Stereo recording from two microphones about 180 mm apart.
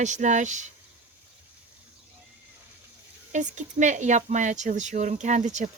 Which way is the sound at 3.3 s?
40° right (ahead or behind).